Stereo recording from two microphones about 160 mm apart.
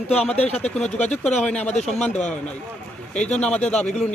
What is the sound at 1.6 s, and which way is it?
Speech, 45° left (ahead or behind).